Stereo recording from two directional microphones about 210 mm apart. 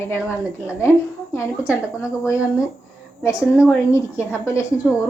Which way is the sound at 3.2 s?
15° left (ahead or behind).